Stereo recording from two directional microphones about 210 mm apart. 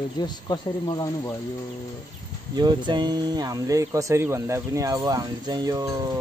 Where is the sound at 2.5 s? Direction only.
20° right (ahead or behind).